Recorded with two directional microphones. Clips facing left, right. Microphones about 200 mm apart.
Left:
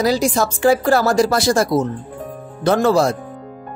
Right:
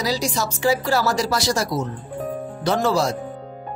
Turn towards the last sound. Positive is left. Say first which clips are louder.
# left 5 dB
turn(degrees=55)  # may be behind; listen again after turning